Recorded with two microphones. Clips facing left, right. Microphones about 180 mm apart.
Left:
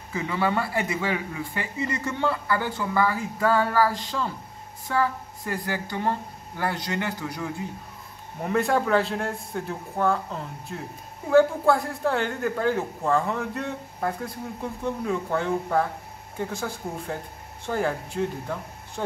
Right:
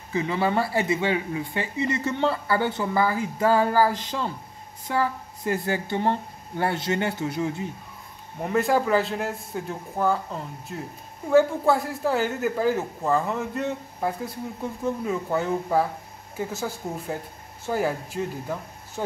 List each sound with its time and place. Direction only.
0.1 s speech: 25° right (ahead or behind)
8.4 s a woman's voice: centre (ahead or behind)